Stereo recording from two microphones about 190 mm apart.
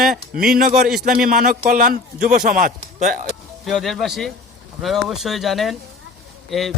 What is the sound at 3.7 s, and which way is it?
Speech, centre (ahead or behind).